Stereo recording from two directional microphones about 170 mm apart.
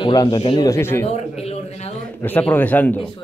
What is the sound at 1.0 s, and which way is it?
Speech, 35° left (ahead or behind).